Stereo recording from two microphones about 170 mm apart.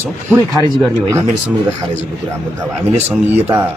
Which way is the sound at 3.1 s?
10° right (ahead or behind).